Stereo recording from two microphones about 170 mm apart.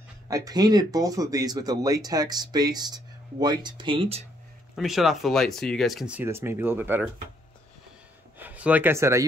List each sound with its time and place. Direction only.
0.3 s speech: 20° right (ahead or behind)
4.7 s speech: centre (ahead or behind)
8.4 s speech: 10° right (ahead or behind)